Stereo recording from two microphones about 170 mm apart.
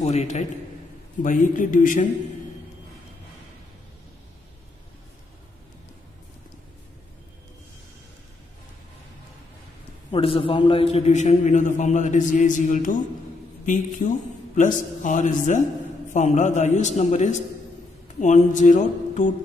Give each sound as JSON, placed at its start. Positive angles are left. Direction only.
{"t": 0.0, "sound": "a man's voice", "side_deg": 40}
{"t": 10.1, "sound": "a man's voice", "side_deg": 30}